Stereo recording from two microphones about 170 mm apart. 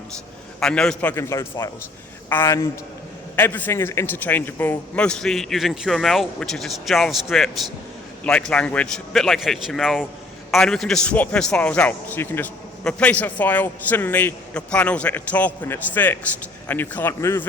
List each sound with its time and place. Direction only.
0.6 s a man's voice: 5° left (ahead or behind)